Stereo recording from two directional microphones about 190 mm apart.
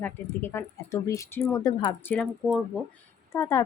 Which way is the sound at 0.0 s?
10° left (ahead or behind).